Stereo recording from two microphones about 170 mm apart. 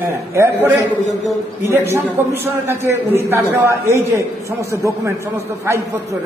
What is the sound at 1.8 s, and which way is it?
A man's voice, 15° right (ahead or behind).